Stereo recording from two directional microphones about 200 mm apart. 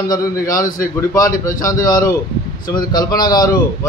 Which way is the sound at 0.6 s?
40° left (ahead or behind).